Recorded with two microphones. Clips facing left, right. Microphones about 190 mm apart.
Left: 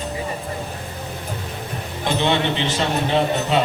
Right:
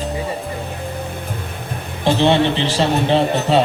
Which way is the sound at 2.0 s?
35° right (ahead or behind).